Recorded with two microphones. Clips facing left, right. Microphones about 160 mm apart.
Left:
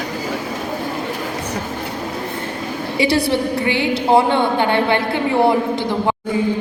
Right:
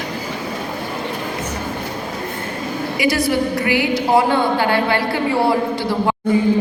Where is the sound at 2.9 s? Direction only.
30° left (ahead or behind).